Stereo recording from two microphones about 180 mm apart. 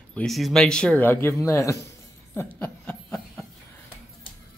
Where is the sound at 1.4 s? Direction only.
15° left (ahead or behind).